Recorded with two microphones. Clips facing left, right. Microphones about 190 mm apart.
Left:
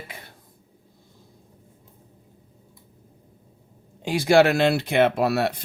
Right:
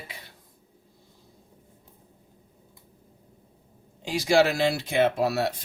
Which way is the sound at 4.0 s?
55° left (ahead or behind).